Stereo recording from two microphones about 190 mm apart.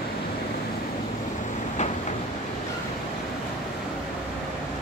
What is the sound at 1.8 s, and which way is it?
Train, 40° left (ahead or behind).